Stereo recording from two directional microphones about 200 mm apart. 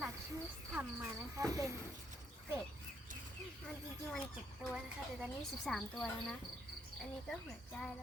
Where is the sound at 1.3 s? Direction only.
15° right (ahead or behind).